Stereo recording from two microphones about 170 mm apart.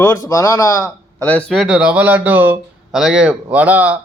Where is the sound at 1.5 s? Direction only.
Centre (ahead or behind).